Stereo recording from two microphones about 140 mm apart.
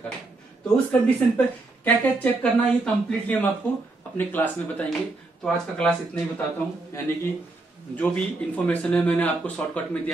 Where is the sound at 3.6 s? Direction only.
15° left (ahead or behind).